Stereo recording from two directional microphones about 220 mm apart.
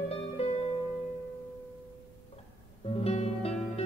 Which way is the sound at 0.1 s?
30° left (ahead or behind).